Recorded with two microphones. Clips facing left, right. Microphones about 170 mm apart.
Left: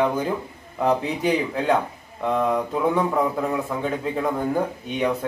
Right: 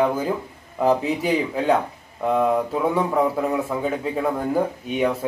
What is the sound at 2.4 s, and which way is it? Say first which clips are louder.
Mantra: right 2 dB; 5° right (ahead or behind).